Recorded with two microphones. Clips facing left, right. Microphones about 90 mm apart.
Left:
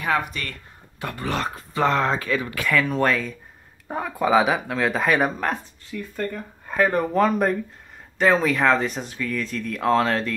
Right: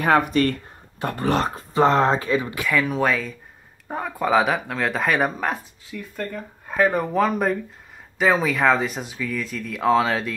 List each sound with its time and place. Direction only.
0.0 s speech: 45° right (ahead or behind); by 2.6 s 20° right (ahead or behind)
2.6 s speech: 5° right (ahead or behind)